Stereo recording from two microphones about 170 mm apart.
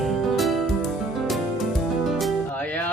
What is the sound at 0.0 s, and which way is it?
Music, centre (ahead or behind).